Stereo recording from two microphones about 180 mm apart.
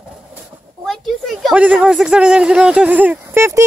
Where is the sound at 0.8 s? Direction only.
Centre (ahead or behind).